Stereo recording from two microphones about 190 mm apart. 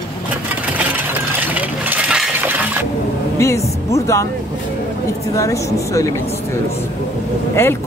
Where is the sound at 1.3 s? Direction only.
10° right (ahead or behind).